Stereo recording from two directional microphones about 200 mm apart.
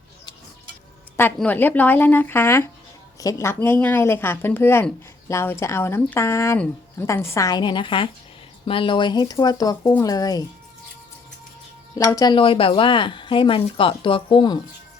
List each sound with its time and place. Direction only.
1.1 s speech: 10° left (ahead or behind)
11.9 s speech: 20° left (ahead or behind)